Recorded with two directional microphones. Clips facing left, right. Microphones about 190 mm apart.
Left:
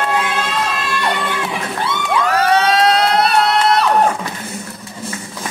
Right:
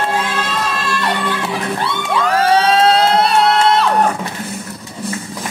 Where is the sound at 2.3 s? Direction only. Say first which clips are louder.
Right 2 dB; 30° right (ahead or behind).